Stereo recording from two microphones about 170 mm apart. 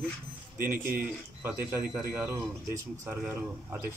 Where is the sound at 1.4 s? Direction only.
10° right (ahead or behind).